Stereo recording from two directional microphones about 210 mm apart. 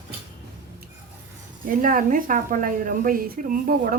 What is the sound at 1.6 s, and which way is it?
A woman's voice, 40° right (ahead or behind).